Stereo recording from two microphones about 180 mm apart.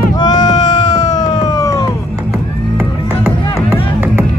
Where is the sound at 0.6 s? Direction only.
25° left (ahead or behind).